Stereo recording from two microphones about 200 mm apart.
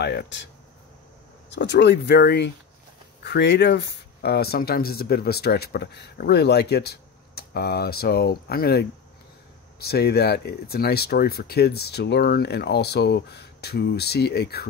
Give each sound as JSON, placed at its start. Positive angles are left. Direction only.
{"t": 0.0, "sound": "speech", "side_deg": 60}
{"t": 1.5, "sound": "speech", "side_deg": 60}